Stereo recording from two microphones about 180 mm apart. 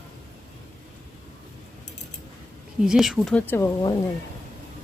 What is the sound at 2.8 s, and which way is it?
Speech, centre (ahead or behind).